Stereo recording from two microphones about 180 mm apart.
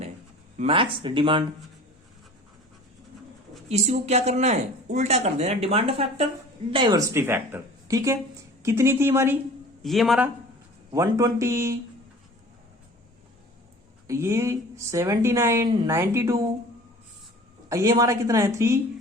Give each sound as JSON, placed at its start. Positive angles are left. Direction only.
{"t": 0.6, "sound": "speech", "side_deg": -30}
{"t": 3.7, "sound": "speech", "side_deg": -40}
{"t": 7.1, "sound": "speech", "side_deg": -15}
{"t": 9.8, "sound": "a man's voice", "side_deg": 0}
{"t": 10.9, "sound": "speech", "side_deg": -15}
{"t": 14.1, "sound": "speech", "side_deg": -15}
{"t": 17.7, "sound": "speech", "side_deg": -20}